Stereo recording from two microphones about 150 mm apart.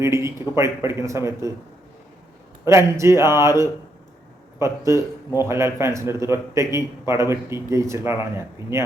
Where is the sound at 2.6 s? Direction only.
20° right (ahead or behind).